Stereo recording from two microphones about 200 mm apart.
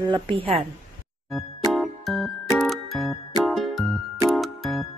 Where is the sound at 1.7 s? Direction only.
Centre (ahead or behind).